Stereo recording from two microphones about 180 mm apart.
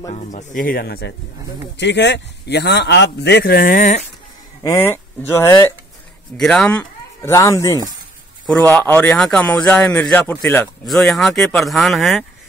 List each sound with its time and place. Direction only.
0.1 s speech: 40° left (ahead or behind); by 1.1 s 60° left (ahead or behind)
1.8 s a man's voice: 75° left (ahead or behind); by 3.9 s 50° left (ahead or behind)
4.6 s speech: 15° left (ahead or behind)
6.3 s a man's voice: 5° left (ahead or behind)